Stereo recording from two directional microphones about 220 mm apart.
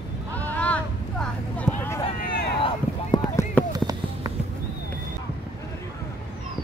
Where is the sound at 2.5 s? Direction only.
20° left (ahead or behind).